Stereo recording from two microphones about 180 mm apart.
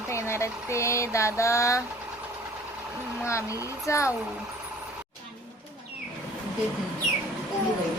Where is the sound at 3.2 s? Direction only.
15° left (ahead or behind).